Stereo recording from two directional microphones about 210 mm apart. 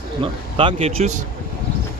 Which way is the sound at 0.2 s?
25° right (ahead or behind).